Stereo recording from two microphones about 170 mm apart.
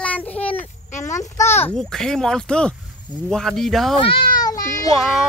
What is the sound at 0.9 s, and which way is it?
Speech, 45° left (ahead or behind).